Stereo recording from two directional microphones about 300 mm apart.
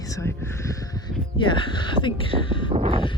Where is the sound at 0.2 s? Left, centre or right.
Centre.